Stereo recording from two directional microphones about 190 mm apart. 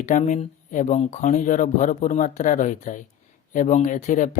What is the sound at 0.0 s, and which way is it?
Speech, 40° left (ahead or behind).